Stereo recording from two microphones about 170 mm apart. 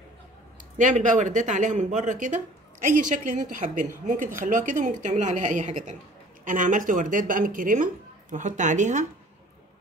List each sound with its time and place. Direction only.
0.7 s speech: 45° right (ahead or behind)